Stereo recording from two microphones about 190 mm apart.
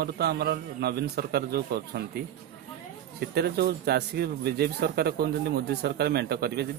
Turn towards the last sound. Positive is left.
turn(degrees=-60)  # may be behind; listen again after turning